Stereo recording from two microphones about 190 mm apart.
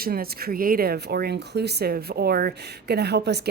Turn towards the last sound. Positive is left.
turn(degrees=-60)  # may be behind; listen again after turning